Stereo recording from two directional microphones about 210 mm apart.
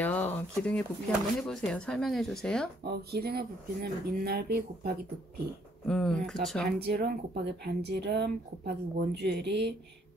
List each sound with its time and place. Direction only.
0.0 s speech: 10° left (ahead or behind)
2.8 s speech: 50° right (ahead or behind)
5.9 s speech: 5° left (ahead or behind)
6.8 s speech: 50° right (ahead or behind)